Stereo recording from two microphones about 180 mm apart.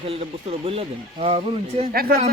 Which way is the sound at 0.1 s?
30° right (ahead or behind).